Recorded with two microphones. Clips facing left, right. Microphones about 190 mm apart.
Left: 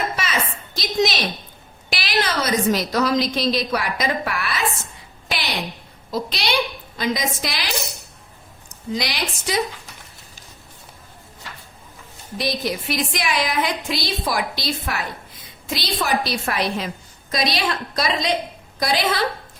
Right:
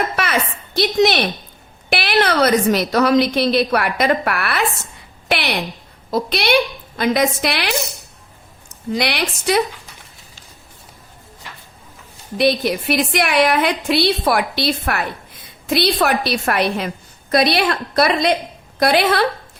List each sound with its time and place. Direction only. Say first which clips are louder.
0.2 s a sound: right 5 dB; 60° right (ahead or behind)
1.9 s a woman's voice: right 7 dB; 60° right (ahead or behind)
8.9 s a woman's voice: right 5 dB; 60° right (ahead or behind)
12.4 s a woman's voice: right 8 dB; 65° right (ahead or behind)